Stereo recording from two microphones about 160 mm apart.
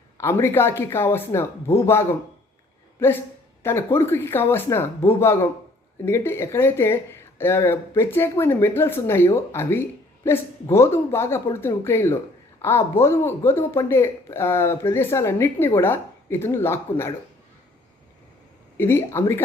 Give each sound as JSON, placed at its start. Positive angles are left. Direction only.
{"t": 0.2, "sound": "speech", "side_deg": 15}
{"t": 18.8, "sound": "speech", "side_deg": 15}